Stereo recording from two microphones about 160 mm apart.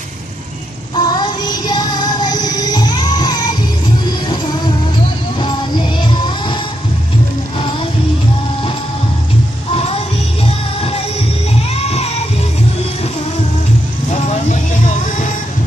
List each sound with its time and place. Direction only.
0.9 s music: 25° left (ahead or behind)
5.4 s music: 30° left (ahead or behind)
11.7 s music: 40° left (ahead or behind)